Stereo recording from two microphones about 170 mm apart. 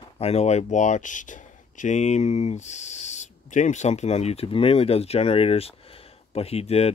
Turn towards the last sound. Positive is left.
turn(degrees=35)  # may be behind; listen again after turning